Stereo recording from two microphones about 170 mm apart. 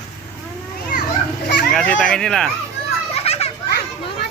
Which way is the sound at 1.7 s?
5° left (ahead or behind).